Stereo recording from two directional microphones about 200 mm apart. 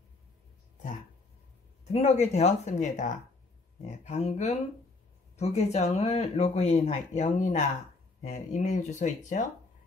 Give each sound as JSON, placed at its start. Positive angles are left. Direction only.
{"t": 2.0, "sound": "speech", "side_deg": 35}